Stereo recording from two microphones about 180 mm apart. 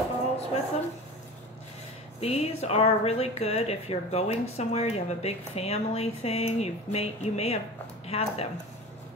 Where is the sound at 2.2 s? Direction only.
35° left (ahead or behind).